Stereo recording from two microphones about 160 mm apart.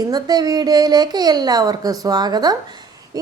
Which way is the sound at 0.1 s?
25° right (ahead or behind).